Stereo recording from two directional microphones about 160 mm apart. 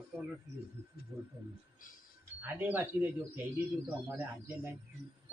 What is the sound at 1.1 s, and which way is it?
Speech, 25° right (ahead or behind).